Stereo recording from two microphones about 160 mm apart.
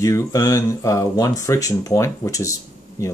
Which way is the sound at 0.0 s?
20° left (ahead or behind).